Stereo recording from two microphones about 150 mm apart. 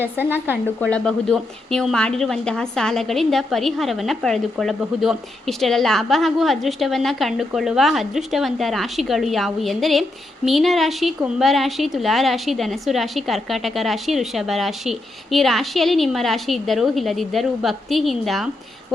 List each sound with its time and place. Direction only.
0.0 s speech: 15° right (ahead or behind)
0.8 s a woman's voice: 5° left (ahead or behind)